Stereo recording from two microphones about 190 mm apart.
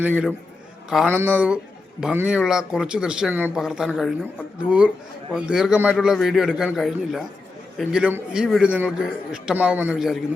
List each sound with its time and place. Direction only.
0.0 s a man's voice: 5° right (ahead or behind)
5.3 s a man's voice: centre (ahead or behind)